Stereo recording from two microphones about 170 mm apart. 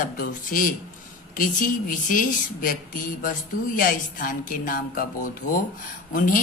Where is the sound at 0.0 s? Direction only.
55° left (ahead or behind).